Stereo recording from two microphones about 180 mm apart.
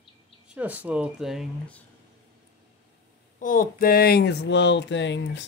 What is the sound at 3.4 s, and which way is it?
Speech, 50° left (ahead or behind).